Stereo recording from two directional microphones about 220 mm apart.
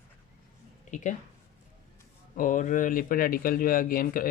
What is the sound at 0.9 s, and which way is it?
Speech, 35° left (ahead or behind).